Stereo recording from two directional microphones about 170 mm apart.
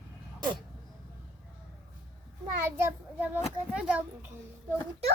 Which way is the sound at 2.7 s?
10° right (ahead or behind).